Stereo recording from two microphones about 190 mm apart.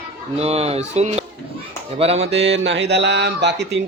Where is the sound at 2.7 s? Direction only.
70° right (ahead or behind).